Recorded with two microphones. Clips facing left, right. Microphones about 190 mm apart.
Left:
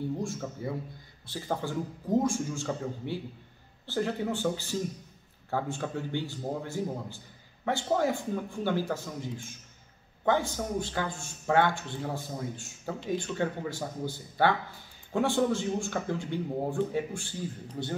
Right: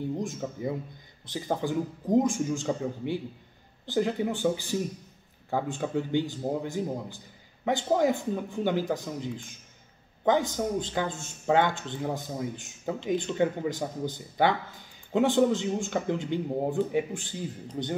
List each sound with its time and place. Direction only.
0.2 s a man's voice: 20° right (ahead or behind)